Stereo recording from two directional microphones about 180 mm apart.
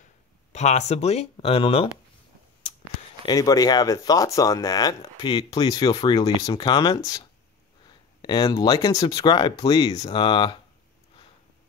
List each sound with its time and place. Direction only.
0.5 s speech: 40° left (ahead or behind)
3.3 s speech: 20° left (ahead or behind)
8.2 s speech: 25° left (ahead or behind)